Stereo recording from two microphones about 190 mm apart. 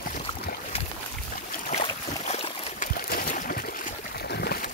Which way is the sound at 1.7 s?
35° left (ahead or behind).